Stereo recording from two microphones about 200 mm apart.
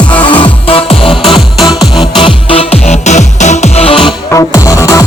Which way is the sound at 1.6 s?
Centre (ahead or behind).